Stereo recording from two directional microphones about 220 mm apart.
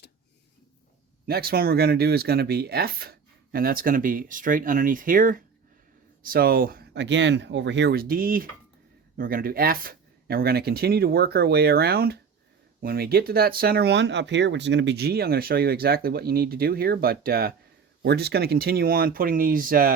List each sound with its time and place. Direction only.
1.3 s speech: 45° right (ahead or behind)